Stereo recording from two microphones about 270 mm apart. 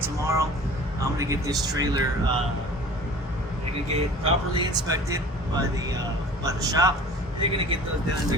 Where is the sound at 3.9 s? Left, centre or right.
Right.